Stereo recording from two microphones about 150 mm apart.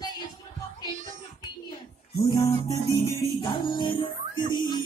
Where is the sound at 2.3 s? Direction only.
20° left (ahead or behind).